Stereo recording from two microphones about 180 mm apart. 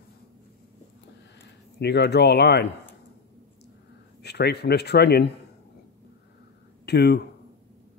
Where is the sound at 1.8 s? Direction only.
65° left (ahead or behind).